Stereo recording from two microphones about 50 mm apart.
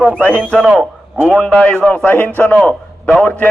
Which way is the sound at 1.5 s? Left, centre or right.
Centre.